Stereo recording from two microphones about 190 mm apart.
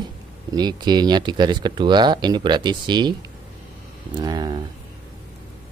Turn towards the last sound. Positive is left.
turn(degrees=-20)  # may be behind; listen again after turning